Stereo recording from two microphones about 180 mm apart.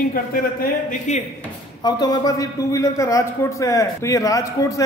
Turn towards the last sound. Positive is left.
turn(degrees=20)  # may be behind; listen again after turning